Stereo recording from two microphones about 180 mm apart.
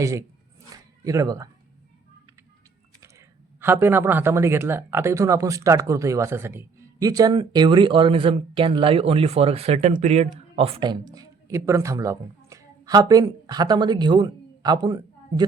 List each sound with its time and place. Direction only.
0.0 s speech: 15° right (ahead or behind)
3.0 s speech: 15° right (ahead or behind)